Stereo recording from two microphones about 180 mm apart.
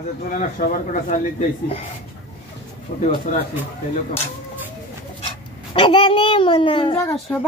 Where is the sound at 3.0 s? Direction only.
45° left (ahead or behind).